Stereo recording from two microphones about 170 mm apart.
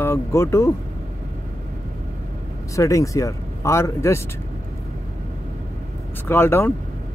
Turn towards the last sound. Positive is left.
turn(degrees=15)  # may be behind; listen again after turning